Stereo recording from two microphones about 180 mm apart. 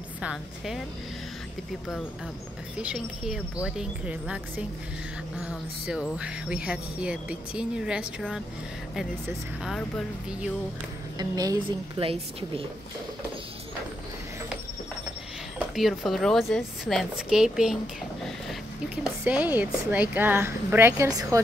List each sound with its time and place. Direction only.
0.2 s speech: 5° right (ahead or behind)
2.8 s a woman's voice: 5° right (ahead or behind)
9.7 s speech: centre (ahead or behind)
11.1 s a woman's voice: 20° right (ahead or behind)
15.7 s speech: centre (ahead or behind)
19.0 s a woman's voice: 5° right (ahead or behind)